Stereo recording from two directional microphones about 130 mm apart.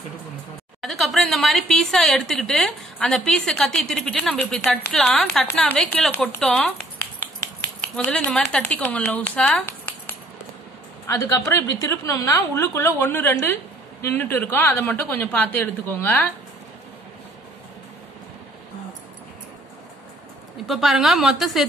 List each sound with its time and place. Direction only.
0.8 s a woman's voice: centre (ahead or behind)
7.9 s speech: 5° left (ahead or behind)
11.1 s a woman's voice: 25° left (ahead or behind)
20.6 s a woman's voice: 5° right (ahead or behind)